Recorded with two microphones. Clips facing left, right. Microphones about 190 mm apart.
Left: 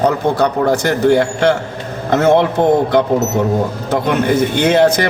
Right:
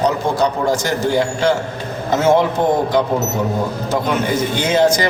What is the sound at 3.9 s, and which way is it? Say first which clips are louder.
A man's voice: left 4 dB; 60° left (ahead or behind).